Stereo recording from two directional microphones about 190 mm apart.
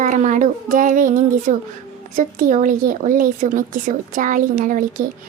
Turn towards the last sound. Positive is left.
turn(degrees=-45)  # may be behind; listen again after turning